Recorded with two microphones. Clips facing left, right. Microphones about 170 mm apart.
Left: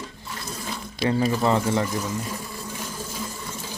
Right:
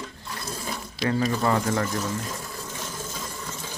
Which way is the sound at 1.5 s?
10° left (ahead or behind).